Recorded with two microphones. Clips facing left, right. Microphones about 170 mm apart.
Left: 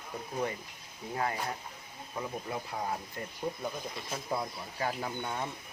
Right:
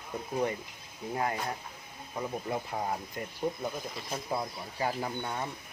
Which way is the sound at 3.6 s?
Centre (ahead or behind).